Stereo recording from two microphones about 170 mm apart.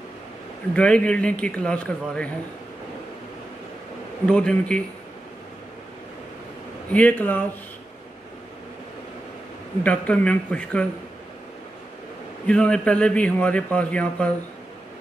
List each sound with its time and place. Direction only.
0.7 s a man's voice: 5° left (ahead or behind)
4.3 s a man's voice: 5° left (ahead or behind)
6.9 s a man's voice: 10° left (ahead or behind)
9.8 s a man's voice: 10° left (ahead or behind)
12.4 s a man's voice: 5° left (ahead or behind)